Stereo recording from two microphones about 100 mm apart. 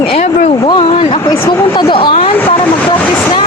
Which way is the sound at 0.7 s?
65° left (ahead or behind).